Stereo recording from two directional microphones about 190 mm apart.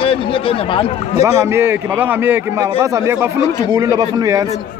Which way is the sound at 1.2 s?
15° right (ahead or behind).